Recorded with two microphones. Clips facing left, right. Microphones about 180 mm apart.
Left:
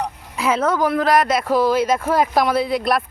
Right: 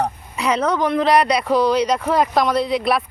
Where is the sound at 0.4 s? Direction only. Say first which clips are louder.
Even; 5° left (ahead or behind).